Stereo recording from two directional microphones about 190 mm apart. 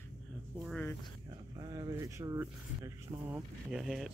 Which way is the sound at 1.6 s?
20° right (ahead or behind).